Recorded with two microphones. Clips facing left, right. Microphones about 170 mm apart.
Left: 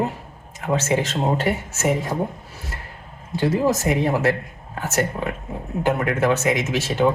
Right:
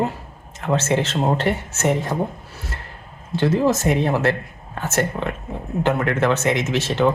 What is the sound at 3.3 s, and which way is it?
Speech, 15° left (ahead or behind).